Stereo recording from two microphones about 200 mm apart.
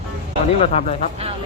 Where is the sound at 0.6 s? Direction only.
35° left (ahead or behind).